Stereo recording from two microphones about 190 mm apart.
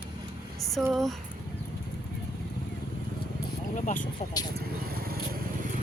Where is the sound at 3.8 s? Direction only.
45° left (ahead or behind).